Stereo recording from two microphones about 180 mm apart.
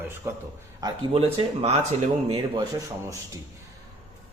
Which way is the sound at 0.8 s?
30° right (ahead or behind).